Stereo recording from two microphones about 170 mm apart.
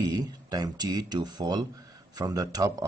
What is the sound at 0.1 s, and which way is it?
Speech, 25° right (ahead or behind).